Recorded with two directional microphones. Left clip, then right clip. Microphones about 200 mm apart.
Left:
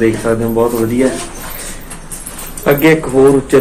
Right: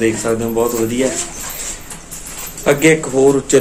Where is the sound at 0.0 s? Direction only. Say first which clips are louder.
Left 3 dB; 20° right (ahead or behind).